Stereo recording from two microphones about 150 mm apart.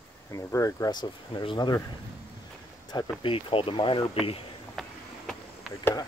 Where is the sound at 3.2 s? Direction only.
35° left (ahead or behind).